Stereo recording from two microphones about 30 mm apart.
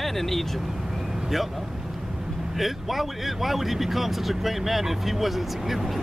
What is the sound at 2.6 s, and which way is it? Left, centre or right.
Speech, centre.